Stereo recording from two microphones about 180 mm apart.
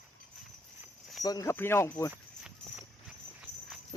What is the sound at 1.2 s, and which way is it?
Speech, 20° left (ahead or behind).